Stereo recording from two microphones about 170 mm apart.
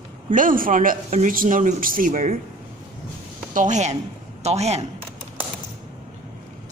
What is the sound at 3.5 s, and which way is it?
A man's voice, 45° right (ahead or behind).